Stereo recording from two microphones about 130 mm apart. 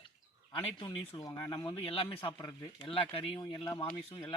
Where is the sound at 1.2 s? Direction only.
30° left (ahead or behind).